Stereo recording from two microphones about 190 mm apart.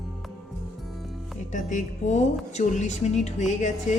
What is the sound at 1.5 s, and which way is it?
A woman's voice, 40° left (ahead or behind).